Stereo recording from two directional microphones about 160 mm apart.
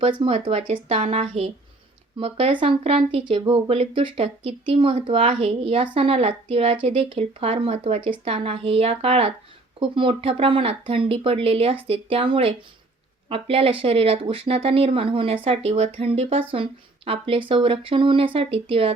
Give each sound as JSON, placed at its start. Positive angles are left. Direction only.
{"t": 0.0, "sound": "speech", "side_deg": -35}